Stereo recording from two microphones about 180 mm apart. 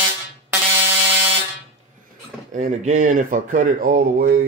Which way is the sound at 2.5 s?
40° right (ahead or behind).